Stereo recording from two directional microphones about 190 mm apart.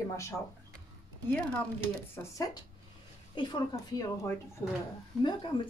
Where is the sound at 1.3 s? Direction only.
5° left (ahead or behind).